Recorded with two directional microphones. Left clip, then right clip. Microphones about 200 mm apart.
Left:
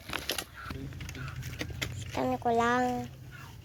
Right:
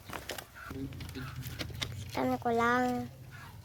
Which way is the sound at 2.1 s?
5° right (ahead or behind).